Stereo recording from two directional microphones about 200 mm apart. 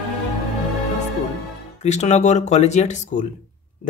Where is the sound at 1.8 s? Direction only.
35° left (ahead or behind).